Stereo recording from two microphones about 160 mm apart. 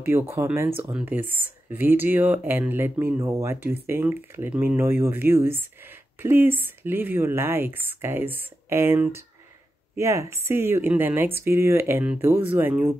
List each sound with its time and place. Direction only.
0.0 s speech: 15° right (ahead or behind)